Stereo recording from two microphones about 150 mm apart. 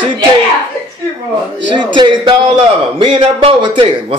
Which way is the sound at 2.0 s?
30° right (ahead or behind).